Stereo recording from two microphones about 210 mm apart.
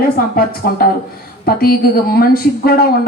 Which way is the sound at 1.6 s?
45° left (ahead or behind).